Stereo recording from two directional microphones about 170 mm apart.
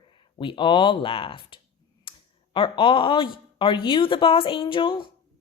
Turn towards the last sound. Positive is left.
turn(degrees=30)  # may be behind; listen again after turning